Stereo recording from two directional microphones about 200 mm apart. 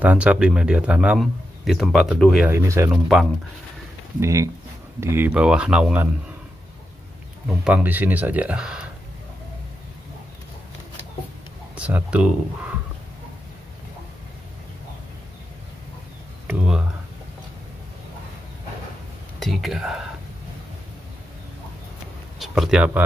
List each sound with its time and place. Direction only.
0.0 s speech: 5° right (ahead or behind)
2.4 s speech: 15° right (ahead or behind)
4.2 s speech: 15° right (ahead or behind)
7.4 s speech: 5° right (ahead or behind)
11.7 s speech: 5° right (ahead or behind)
16.4 s a sound: 5° right (ahead or behind)
19.4 s speech: centre (ahead or behind)
22.4 s speech: centre (ahead or behind)